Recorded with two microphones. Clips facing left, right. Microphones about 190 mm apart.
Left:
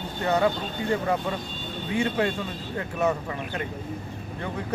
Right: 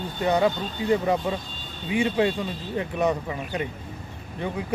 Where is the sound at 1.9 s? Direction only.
15° right (ahead or behind).